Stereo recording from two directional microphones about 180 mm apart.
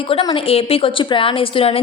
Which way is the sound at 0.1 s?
30° left (ahead or behind).